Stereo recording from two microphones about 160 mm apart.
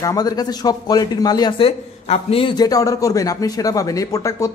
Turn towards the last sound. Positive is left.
turn(degrees=20)  # may be behind; listen again after turning